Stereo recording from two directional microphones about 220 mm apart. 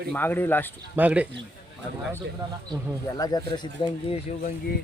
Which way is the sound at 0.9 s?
5° right (ahead or behind).